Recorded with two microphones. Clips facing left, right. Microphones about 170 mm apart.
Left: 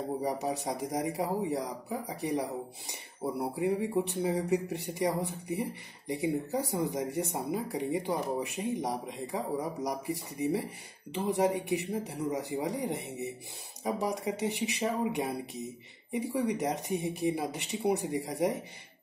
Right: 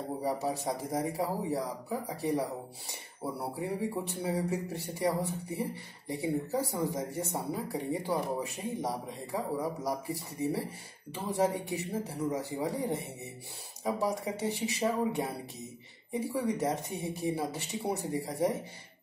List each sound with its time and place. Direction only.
0.2 s speech: 20° left (ahead or behind)
2.9 s speech: 15° left (ahead or behind)